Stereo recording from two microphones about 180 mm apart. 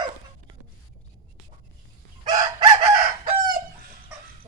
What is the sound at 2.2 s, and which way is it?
Chicken, 20° right (ahead or behind).